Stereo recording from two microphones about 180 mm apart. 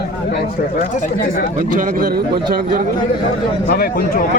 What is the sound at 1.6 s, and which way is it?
A man's voice, 50° right (ahead or behind).